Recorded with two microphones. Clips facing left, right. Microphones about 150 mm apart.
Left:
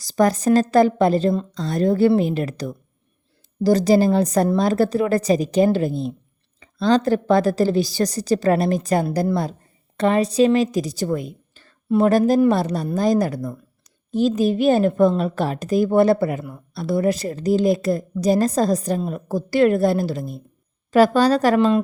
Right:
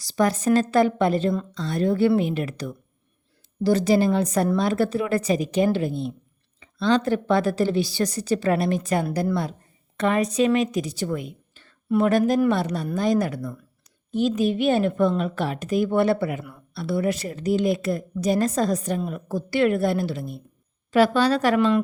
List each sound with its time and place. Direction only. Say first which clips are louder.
0.0 s a woman's voice: left 4 dB; 40° left (ahead or behind)